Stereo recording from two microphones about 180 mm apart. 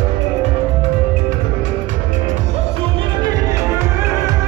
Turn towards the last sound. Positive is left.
turn(degrees=-15)  # may be behind; listen again after turning